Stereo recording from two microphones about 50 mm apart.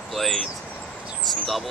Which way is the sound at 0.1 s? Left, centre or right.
Centre.